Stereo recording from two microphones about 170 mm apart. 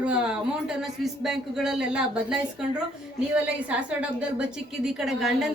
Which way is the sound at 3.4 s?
5° right (ahead or behind).